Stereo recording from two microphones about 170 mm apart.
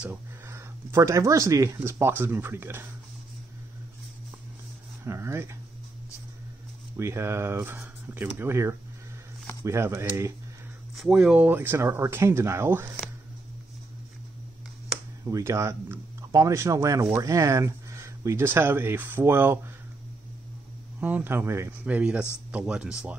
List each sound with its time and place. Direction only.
0.0 s speech: 15° right (ahead or behind)
5.0 s speech: 15° right (ahead or behind)
7.0 s speech: 15° right (ahead or behind)
11.0 s speech: centre (ahead or behind)
15.2 s speech: 15° right (ahead or behind)
21.0 s speech: 10° right (ahead or behind)